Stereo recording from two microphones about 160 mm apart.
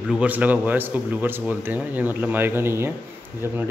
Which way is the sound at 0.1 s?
10° right (ahead or behind).